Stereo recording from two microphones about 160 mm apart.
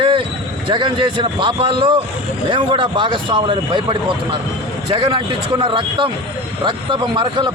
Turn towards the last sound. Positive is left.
turn(degrees=-30)  # may be behind; listen again after turning